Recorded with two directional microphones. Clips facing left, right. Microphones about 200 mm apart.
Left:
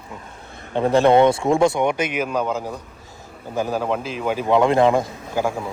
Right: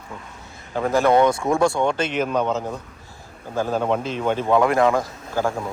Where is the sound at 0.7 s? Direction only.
25° left (ahead or behind); by 4.5 s 5° left (ahead or behind).